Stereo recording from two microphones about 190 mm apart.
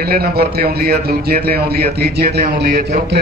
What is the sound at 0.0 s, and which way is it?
A man's voice, 55° right (ahead or behind).